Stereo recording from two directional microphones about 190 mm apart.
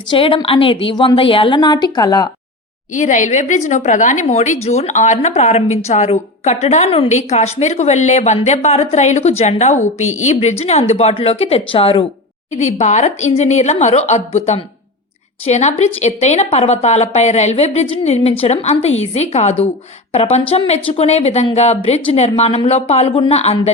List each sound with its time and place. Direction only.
0.1 s a woman's voice: 25° left (ahead or behind)
2.9 s a woman's voice: 40° left (ahead or behind)